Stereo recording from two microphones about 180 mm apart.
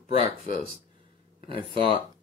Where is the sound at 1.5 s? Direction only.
30° right (ahead or behind).